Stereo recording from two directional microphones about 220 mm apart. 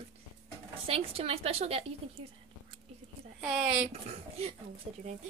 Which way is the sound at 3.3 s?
5° right (ahead or behind).